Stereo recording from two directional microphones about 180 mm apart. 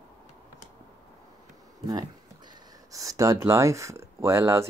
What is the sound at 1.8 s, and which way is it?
Speech, 20° right (ahead or behind).